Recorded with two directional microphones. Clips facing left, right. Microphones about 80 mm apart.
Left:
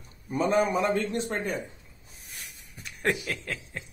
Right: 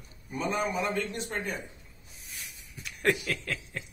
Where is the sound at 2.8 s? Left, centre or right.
Left.